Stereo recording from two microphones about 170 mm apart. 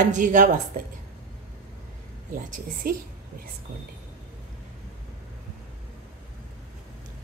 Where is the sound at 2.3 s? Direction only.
50° right (ahead or behind).